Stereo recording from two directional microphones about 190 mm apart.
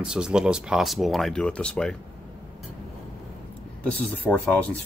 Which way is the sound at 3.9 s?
5° left (ahead or behind).